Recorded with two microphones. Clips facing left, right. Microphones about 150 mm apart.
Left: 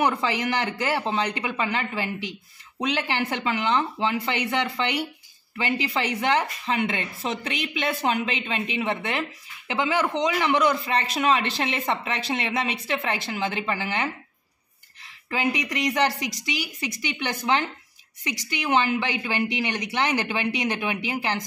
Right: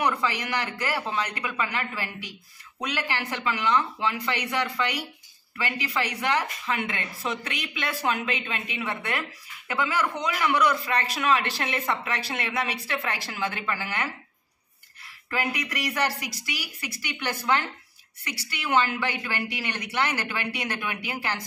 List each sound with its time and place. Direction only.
0.0 s a man's voice: 25° left (ahead or behind)
15.2 s a man's voice: 20° left (ahead or behind)